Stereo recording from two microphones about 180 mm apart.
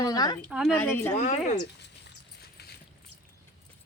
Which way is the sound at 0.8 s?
15° left (ahead or behind).